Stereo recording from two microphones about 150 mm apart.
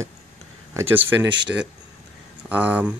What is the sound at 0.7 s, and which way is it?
Speech, 15° right (ahead or behind).